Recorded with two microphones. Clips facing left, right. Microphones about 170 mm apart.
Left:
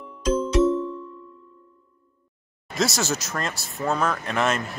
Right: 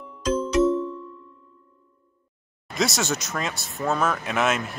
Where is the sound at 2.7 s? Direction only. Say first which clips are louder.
Even; centre (ahead or behind).